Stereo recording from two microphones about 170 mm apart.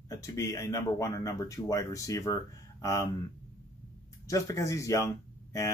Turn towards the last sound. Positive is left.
turn(degrees=20)  # may be behind; listen again after turning